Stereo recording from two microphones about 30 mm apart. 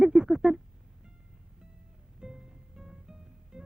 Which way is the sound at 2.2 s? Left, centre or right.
Right.